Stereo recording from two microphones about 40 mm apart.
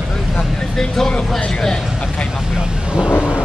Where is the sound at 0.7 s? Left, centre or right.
Centre.